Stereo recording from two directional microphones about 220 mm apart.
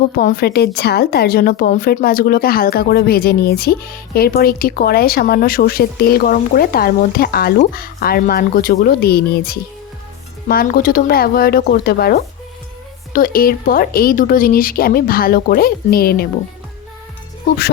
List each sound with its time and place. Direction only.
0.2 s a woman's voice: 40° left (ahead or behind)